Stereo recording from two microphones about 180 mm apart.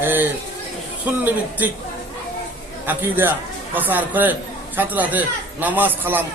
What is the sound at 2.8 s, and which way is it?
A man's voice, 10° right (ahead or behind).